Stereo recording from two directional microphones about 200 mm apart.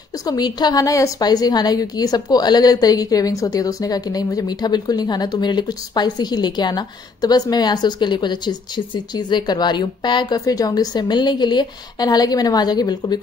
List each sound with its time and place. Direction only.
0.2 s a woman's voice: 20° left (ahead or behind)